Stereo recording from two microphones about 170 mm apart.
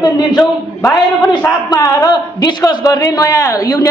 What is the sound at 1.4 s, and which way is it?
A man's voice, 20° left (ahead or behind).